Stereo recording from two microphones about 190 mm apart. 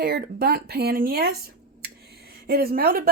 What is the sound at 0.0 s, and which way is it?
Speech, 55° right (ahead or behind).